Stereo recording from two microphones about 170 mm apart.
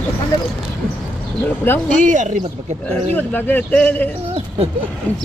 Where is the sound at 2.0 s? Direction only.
45° right (ahead or behind).